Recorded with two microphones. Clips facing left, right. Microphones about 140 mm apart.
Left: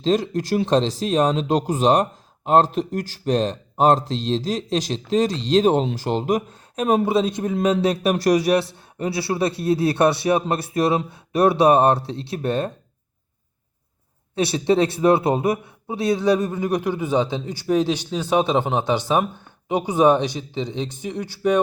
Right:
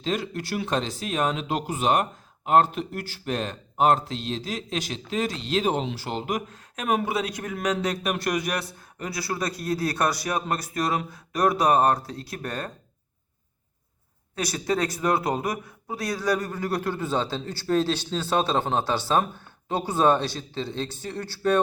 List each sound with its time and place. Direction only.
0.0 s speech: 35° left (ahead or behind)
14.3 s a man's voice: 25° left (ahead or behind)